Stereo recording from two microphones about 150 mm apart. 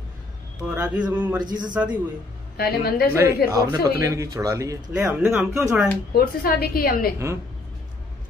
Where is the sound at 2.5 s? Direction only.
90° left.